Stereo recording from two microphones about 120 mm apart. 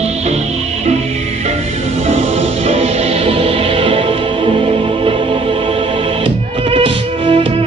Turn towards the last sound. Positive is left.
turn(degrees=-45)  # may be behind; listen again after turning